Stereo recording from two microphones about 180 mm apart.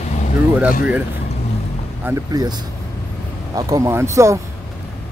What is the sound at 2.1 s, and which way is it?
Speech, 10° right (ahead or behind).